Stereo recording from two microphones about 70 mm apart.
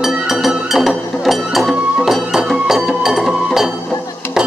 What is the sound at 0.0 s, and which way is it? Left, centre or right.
Music, centre.